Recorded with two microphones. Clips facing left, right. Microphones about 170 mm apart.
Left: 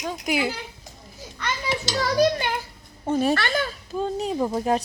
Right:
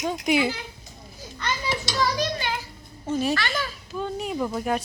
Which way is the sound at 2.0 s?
50° left (ahead or behind).